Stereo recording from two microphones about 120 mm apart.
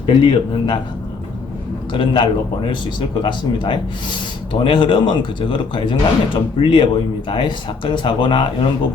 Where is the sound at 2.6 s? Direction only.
40° left (ahead or behind).